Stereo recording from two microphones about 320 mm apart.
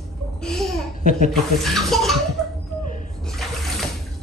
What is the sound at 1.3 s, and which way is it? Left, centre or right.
Speech, centre.